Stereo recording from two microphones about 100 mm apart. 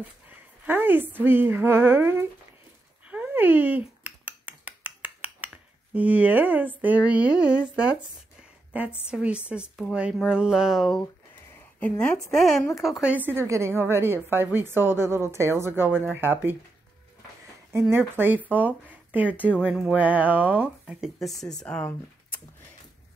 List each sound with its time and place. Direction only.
0.7 s a woman's voice: 20° right (ahead or behind)
3.1 s a sound: 15° right (ahead or behind)
5.9 s speech: 15° right (ahead or behind)
11.8 s speech: 10° left (ahead or behind)
13.0 s a woman's voice: 15° right (ahead or behind)
17.9 s a woman's voice: 20° right (ahead or behind)
21.2 s speech: 5° left (ahead or behind)